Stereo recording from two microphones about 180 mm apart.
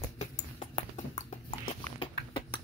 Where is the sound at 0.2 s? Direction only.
40° left (ahead or behind).